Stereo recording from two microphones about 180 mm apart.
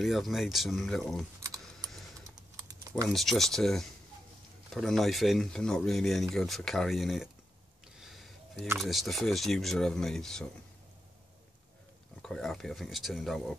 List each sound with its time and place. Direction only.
0.0 s speech: centre (ahead or behind)
1.4 s typing: 20° right (ahead or behind)
3.1 s speech: centre (ahead or behind)
8.0 s a sound: centre (ahead or behind)
8.7 s speech: centre (ahead or behind)
12.2 s speech: 5° left (ahead or behind)